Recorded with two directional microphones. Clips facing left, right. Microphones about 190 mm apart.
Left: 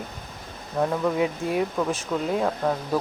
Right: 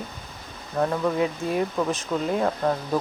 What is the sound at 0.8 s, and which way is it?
Speech, 5° left (ahead or behind).